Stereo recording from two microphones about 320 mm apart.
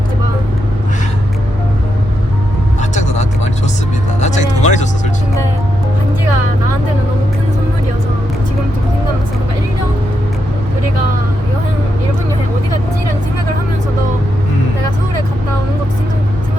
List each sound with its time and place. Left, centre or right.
2.9 s vehicle: left
4.2 s music: left